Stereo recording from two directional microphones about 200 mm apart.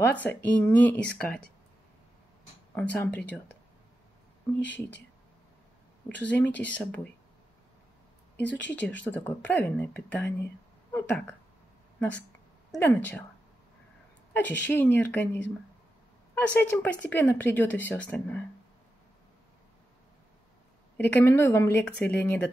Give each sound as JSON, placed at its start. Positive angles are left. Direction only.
{"t": 0.1, "sound": "speech", "side_deg": 10}
{"t": 2.7, "sound": "speech", "side_deg": 10}
{"t": 4.6, "sound": "speech", "side_deg": 65}
{"t": 6.0, "sound": "speech", "side_deg": 10}
{"t": 8.4, "sound": "speech", "side_deg": 60}
{"t": 9.0, "sound": "speech", "side_deg": 10}
{"t": 12.7, "sound": "speech", "side_deg": 10}
{"t": 14.7, "sound": "speech", "side_deg": 10}
{"t": 21.0, "sound": "speech", "side_deg": 10}